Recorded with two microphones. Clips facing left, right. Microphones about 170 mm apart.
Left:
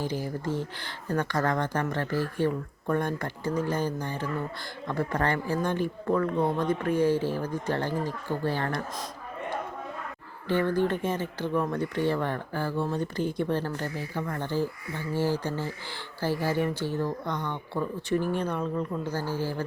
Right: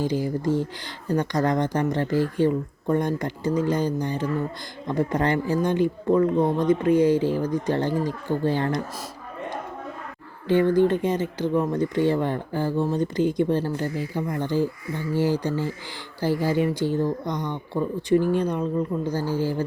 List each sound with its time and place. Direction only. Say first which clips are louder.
0.0 s speech: right 7 dB; 15° right (ahead or behind)
10.5 s speech: right 7 dB; 15° right (ahead or behind)